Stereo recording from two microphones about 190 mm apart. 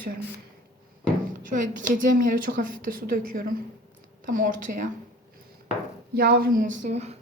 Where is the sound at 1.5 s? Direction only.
45° right (ahead or behind).